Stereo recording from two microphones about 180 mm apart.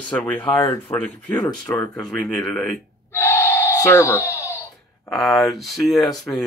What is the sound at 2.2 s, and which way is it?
Speech, 5° left (ahead or behind).